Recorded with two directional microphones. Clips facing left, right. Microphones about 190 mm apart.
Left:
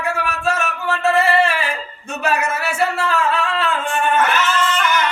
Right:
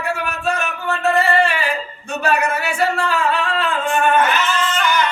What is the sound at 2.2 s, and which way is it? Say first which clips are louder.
Music: right 1 dB; 5° left (ahead or behind).